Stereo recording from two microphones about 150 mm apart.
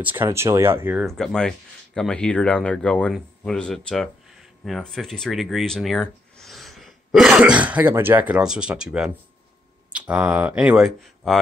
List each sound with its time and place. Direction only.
0.0 s speech: 15° right (ahead or behind)
1.0 s speech: centre (ahead or behind)